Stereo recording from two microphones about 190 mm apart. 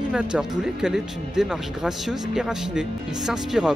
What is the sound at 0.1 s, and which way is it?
Speech, 5° right (ahead or behind).